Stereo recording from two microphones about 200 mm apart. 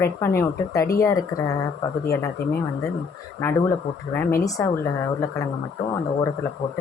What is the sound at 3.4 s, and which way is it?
Speech, 10° left (ahead or behind).